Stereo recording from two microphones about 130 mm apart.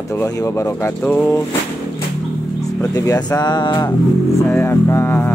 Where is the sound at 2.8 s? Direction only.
25° left (ahead or behind).